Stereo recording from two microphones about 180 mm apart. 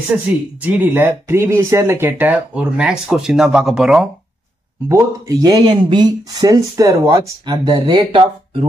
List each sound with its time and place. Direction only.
0.6 s speech: 10° right (ahead or behind)
4.8 s speech: 20° right (ahead or behind)